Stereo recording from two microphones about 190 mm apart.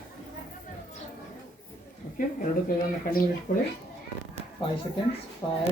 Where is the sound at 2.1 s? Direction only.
50° left (ahead or behind).